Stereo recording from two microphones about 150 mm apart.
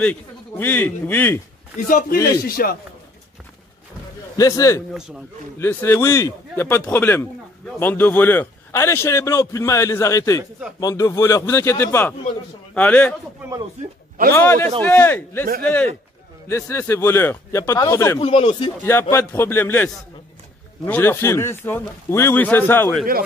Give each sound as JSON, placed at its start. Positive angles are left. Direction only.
{"t": 0.0, "sound": "a man's voice", "side_deg": 10}
{"t": 1.9, "sound": "a man's voice", "side_deg": 65}
{"t": 2.4, "sound": "a man's voice", "side_deg": 80}
{"t": 4.4, "sound": "a man's voice", "side_deg": 20}
{"t": 13.8, "sound": "a man's voice", "side_deg": -50}
{"t": 14.3, "sound": "a man's voice", "side_deg": 15}
{"t": 18.2, "sound": "speech", "side_deg": 40}
{"t": 18.8, "sound": "a man's voice", "side_deg": 15}